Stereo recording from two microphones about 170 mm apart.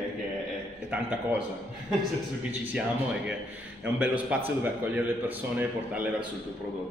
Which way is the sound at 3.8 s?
10° right (ahead or behind).